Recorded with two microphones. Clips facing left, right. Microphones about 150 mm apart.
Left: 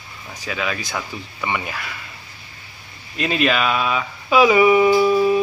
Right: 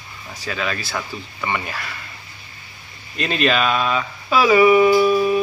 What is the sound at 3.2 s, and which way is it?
Speech, 5° left (ahead or behind).